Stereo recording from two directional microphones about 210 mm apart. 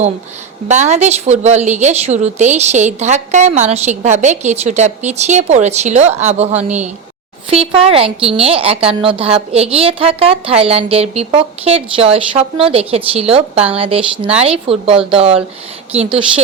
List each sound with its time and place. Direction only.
0.7 s a woman's voice: 35° right (ahead or behind)
16.0 s a woman's voice: 5° right (ahead or behind)